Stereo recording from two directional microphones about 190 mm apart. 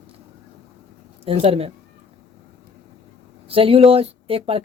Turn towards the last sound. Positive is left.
turn(degrees=-30)  # may be behind; listen again after turning